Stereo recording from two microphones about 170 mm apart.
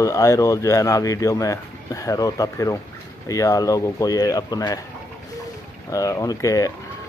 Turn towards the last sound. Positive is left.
turn(degrees=20)  # may be behind; listen again after turning